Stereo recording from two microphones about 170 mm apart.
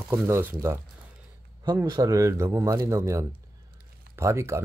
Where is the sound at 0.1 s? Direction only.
10° right (ahead or behind).